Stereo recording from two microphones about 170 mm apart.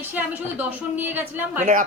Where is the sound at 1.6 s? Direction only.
50° right (ahead or behind).